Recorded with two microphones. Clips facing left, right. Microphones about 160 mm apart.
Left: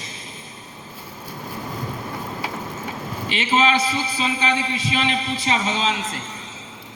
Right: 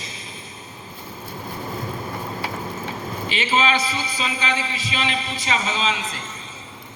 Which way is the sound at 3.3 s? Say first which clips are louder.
Left 2 dB; 50° left (ahead or behind).